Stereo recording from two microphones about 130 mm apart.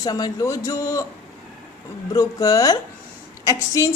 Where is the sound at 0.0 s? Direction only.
30° left (ahead or behind).